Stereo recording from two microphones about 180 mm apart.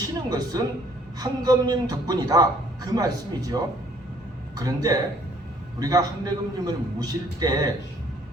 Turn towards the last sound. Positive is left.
turn(degrees=-20)  # may be behind; listen again after turning